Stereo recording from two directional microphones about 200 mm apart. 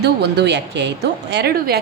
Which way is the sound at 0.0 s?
55° right (ahead or behind).